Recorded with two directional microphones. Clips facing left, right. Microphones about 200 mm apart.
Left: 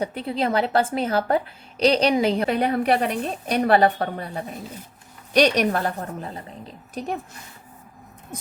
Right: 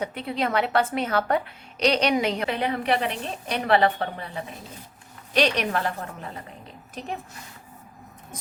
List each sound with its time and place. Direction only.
0.0 s a woman's voice: 35° left (ahead or behind)